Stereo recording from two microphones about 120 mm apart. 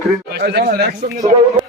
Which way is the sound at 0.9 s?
80° right.